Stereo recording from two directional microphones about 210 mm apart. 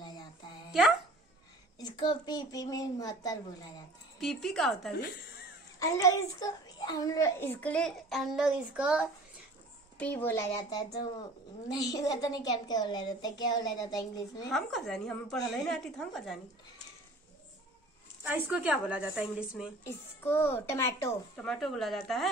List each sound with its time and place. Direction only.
0.7 s a sound: centre (ahead or behind)
1.8 s a child's voice: 20° left (ahead or behind)
4.2 s a woman's voice: centre (ahead or behind)
5.8 s a child's voice: 15° left (ahead or behind); by 9.0 s 5° right (ahead or behind)
9.9 s a child's voice: 10° left (ahead or behind)
14.5 s a woman's voice: centre (ahead or behind)
18.2 s a woman's voice: 10° right (ahead or behind)
19.8 s a child's voice: 10° left (ahead or behind)
21.5 s a woman's voice: centre (ahead or behind)